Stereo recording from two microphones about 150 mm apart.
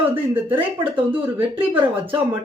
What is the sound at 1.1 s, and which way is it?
Speech, 35° right (ahead or behind).